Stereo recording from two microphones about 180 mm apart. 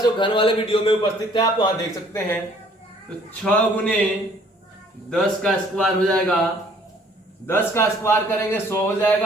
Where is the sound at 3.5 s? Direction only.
Centre (ahead or behind).